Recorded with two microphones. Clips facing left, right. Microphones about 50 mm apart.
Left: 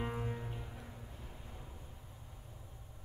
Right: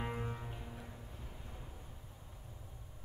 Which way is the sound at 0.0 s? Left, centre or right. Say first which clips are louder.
Left 1 dB; centre.